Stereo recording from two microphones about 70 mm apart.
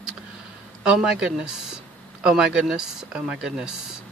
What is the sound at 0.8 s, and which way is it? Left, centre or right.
Speech, centre.